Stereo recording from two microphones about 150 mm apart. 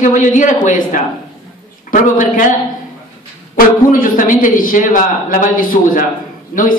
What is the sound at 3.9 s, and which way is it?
A woman's voice, 65° left (ahead or behind).